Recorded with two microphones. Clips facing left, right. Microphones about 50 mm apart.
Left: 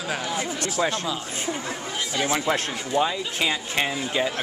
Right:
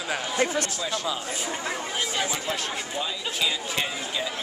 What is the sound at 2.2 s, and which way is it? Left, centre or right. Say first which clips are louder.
Speech: left 5 dB; left.